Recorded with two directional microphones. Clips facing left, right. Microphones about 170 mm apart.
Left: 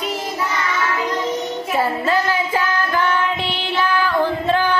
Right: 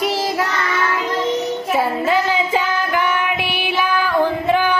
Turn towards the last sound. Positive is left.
turn(degrees=-15)  # may be behind; listen again after turning